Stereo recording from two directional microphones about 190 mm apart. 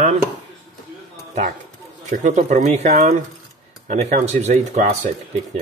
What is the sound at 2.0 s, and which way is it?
Speech, 40° right (ahead or behind).